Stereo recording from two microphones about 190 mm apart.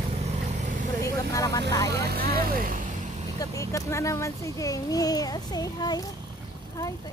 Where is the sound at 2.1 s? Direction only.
55° right (ahead or behind).